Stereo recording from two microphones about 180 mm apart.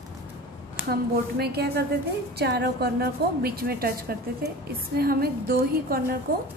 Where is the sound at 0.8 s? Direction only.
60° right (ahead or behind).